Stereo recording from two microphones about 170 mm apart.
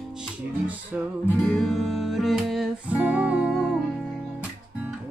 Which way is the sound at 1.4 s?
5° left (ahead or behind).